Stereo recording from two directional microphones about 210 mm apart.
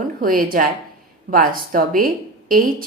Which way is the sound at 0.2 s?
40° right (ahead or behind).